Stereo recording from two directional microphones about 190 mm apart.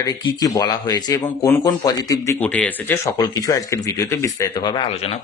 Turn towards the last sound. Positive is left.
turn(degrees=20)  # may be behind; listen again after turning